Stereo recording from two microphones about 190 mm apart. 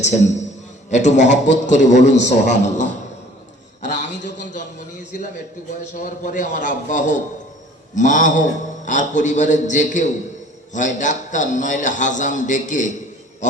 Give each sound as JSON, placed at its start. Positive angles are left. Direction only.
{"t": 0.0, "sound": "a man's voice", "side_deg": 40}
{"t": 6.0, "sound": "a man's voice", "side_deg": 40}